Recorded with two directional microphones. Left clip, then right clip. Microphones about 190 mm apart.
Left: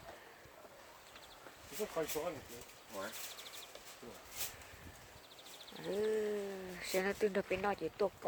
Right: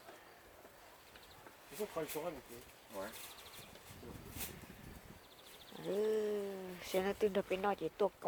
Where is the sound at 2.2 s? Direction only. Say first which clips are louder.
Left 1 dB; 10° right (ahead or behind).